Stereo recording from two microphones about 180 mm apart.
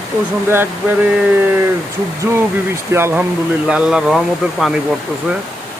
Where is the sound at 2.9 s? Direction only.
10° right (ahead or behind).